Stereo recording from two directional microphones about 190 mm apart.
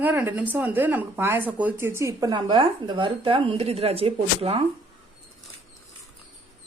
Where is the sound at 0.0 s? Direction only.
10° right (ahead or behind); by 4.6 s 30° right (ahead or behind).